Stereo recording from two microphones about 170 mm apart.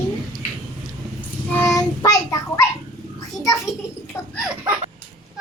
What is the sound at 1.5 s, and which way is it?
Child singing, 20° left (ahead or behind).